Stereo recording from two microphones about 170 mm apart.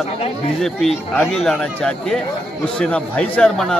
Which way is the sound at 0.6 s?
Centre (ahead or behind).